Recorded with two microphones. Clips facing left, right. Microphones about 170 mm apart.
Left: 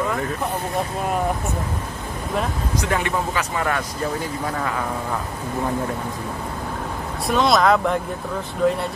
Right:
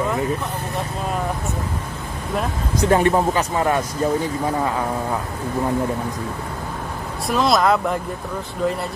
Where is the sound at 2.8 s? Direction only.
35° right (ahead or behind).